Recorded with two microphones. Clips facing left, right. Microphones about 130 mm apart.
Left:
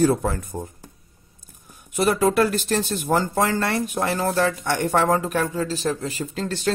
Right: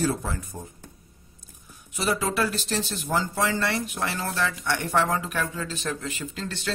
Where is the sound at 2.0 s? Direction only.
50° left (ahead or behind).